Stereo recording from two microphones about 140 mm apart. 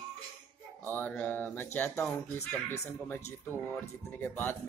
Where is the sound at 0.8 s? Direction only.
10° left (ahead or behind).